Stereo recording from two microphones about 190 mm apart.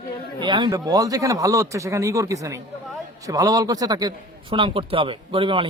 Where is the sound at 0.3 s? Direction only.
25° right (ahead or behind).